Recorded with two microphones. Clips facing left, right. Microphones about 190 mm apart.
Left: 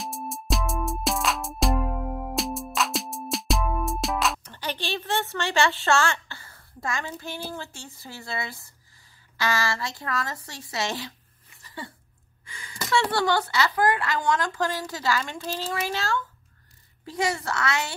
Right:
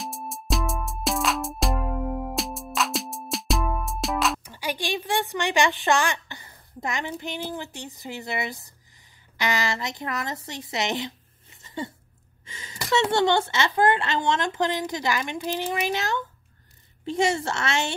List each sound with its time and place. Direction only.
0.0 s music: centre (ahead or behind); by 8.7 s 20° right (ahead or behind)
9.4 s a woman's voice: 20° right (ahead or behind)